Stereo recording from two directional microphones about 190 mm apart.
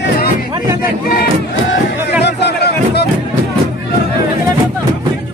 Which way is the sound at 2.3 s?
65° left (ahead or behind).